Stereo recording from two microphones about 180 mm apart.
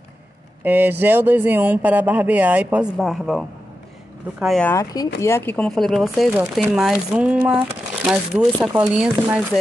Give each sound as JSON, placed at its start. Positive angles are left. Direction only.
{"t": 0.7, "sound": "speech", "side_deg": -10}
{"t": 4.6, "sound": "speech", "side_deg": 20}